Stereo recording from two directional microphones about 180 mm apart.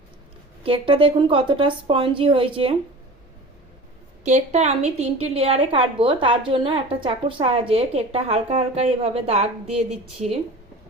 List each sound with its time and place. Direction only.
0.6 s a woman's voice: 30° right (ahead or behind)
4.2 s a woman's voice: 40° right (ahead or behind)